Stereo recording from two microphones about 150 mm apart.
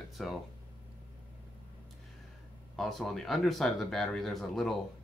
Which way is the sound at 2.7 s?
Centre (ahead or behind).